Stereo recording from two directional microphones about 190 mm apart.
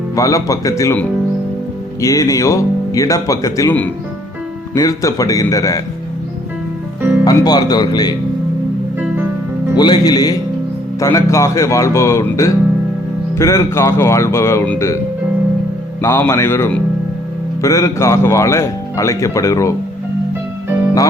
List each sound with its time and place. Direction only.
0.2 s speech: 15° left (ahead or behind)
7.0 s music: 10° right (ahead or behind)
7.3 s speech: 20° left (ahead or behind)
9.0 s music: 10° right (ahead or behind)
9.7 s speech: 20° left (ahead or behind)
16.0 s speech: 15° left (ahead or behind)